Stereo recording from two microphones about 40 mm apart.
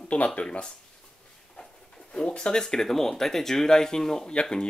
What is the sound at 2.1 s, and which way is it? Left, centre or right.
Speech, left.